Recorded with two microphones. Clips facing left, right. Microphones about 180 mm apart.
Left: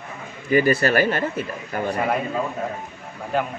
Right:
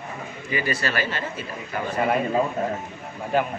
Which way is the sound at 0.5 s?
50° left (ahead or behind).